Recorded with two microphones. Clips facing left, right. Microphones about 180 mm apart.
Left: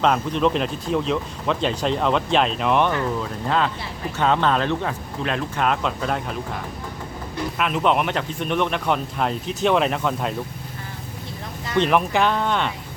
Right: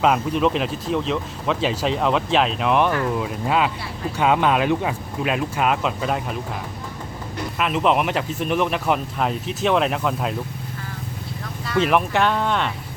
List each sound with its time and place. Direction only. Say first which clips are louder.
0.0 s speech: right 1 dB; 5° right (ahead or behind)
7.6 s speech: right 1 dB; centre (ahead or behind)
11.8 s speech: even; centre (ahead or behind)